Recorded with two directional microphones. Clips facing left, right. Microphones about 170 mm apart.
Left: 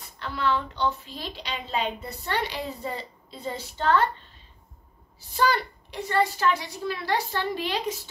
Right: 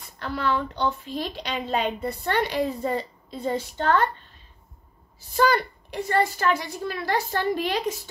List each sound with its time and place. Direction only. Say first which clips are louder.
0.2 s a woman's voice: right 1 dB; 45° right (ahead or behind)
5.3 s a woman's voice: right 3 dB; 50° right (ahead or behind)